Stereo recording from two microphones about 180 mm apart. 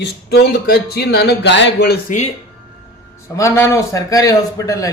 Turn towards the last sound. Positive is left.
turn(degrees=20)  # may be behind; listen again after turning